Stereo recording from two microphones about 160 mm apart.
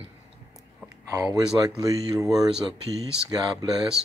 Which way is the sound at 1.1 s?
20° right (ahead or behind).